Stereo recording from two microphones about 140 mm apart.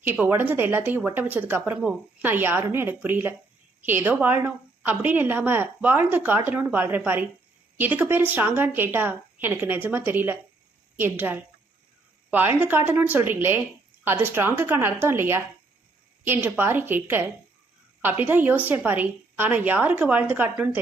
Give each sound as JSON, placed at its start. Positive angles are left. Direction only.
{"t": 0.0, "sound": "a woman's voice", "side_deg": -15}